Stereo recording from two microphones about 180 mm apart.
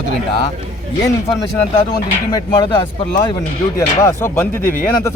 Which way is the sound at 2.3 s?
25° left (ahead or behind).